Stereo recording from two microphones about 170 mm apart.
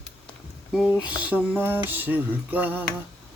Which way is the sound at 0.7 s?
5° right (ahead or behind).